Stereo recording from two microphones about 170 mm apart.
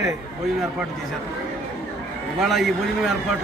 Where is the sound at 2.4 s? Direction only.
Centre (ahead or behind).